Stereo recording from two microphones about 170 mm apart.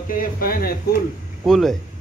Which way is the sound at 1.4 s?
Centre (ahead or behind).